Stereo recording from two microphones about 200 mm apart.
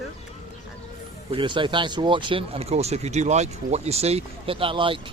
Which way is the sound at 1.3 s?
25° right (ahead or behind).